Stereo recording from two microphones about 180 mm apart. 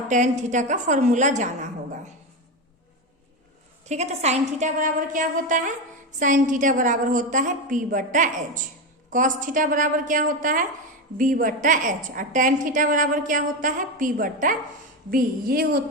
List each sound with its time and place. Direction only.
0.1 s a woman's voice: 45° right (ahead or behind)
3.8 s a woman's voice: 40° right (ahead or behind); by 15.8 s 55° right (ahead or behind)